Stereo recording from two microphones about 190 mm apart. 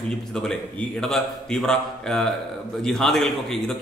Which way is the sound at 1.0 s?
5° left (ahead or behind).